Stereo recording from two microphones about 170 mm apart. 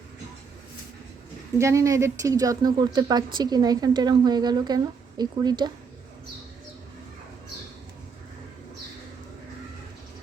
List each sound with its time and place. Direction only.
1.5 s speech: 15° right (ahead or behind)